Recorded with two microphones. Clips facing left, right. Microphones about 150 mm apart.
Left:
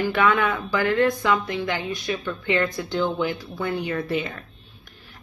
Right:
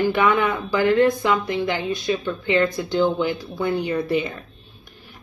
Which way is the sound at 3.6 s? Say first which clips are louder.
Right 4 dB; 15° right (ahead or behind).